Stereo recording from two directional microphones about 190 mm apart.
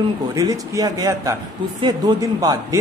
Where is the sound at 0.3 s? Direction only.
20° right (ahead or behind).